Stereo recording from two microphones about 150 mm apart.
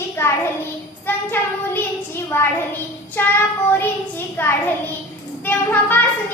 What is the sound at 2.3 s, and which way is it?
Speech, 15° left (ahead or behind).